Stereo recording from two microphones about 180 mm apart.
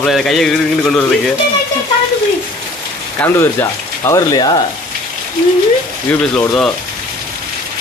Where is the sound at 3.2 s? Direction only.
15° left (ahead or behind).